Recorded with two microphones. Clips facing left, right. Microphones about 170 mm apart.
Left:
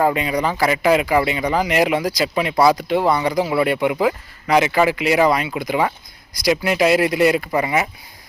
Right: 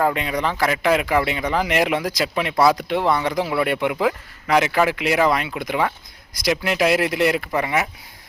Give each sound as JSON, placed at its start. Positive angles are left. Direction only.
{"t": 0.0, "sound": "speech", "side_deg": 5}